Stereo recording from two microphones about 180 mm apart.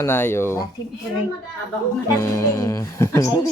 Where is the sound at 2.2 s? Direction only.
15° left (ahead or behind).